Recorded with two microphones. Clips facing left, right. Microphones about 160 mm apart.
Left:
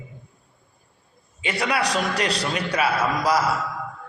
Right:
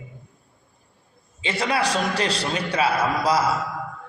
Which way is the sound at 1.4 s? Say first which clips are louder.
Right 1 dB; 25° right (ahead or behind).